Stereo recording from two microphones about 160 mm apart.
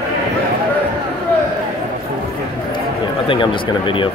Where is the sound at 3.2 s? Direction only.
30° left (ahead or behind).